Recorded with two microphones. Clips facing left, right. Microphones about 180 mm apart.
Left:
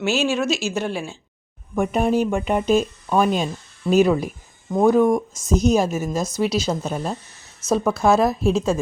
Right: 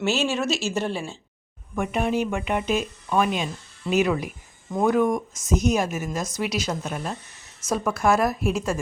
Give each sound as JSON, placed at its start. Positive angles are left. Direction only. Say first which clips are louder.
{"t": 0.0, "sound": "speech", "louder": "left 3 dB", "side_deg": 0}
{"t": 1.7, "sound": "a woman's voice", "louder": "left 5 dB", "side_deg": 35}